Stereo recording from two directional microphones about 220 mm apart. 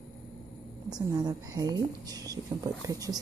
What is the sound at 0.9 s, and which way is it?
Speech, 20° right (ahead or behind).